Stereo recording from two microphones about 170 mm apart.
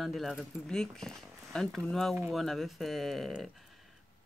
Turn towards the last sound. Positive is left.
turn(degrees=0)  # may be behind; listen again after turning